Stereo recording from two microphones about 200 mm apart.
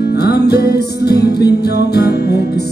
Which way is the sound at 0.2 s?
55° left (ahead or behind).